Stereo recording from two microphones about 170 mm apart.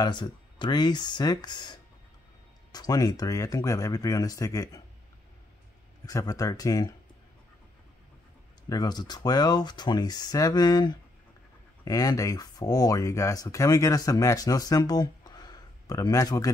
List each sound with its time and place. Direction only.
0.0 s speech: 25° left (ahead or behind)
6.0 s speech: 20° left (ahead or behind)
8.6 s speech: 25° left (ahead or behind)